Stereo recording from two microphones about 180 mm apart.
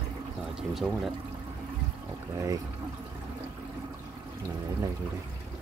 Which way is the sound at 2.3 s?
20° right (ahead or behind).